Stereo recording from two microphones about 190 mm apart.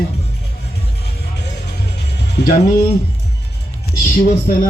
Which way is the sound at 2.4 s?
60° left (ahead or behind).